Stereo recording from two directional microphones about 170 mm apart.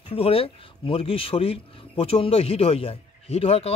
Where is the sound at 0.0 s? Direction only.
35° left (ahead or behind).